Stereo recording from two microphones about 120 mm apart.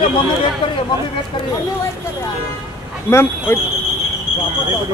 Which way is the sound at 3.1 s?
20° left (ahead or behind).